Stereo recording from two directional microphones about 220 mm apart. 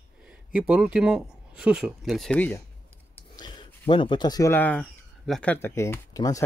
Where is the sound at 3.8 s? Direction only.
20° left (ahead or behind).